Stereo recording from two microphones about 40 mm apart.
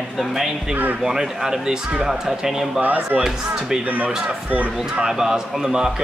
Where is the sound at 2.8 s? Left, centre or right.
Right.